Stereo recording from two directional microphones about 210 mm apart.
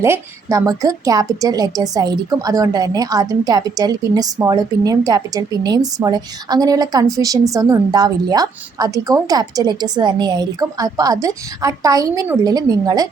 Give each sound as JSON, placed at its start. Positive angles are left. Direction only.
{"t": 0.0, "sound": "a woman's voice", "side_deg": -15}